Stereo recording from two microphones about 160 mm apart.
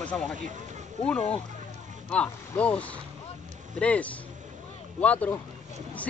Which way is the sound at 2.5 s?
10° left (ahead or behind).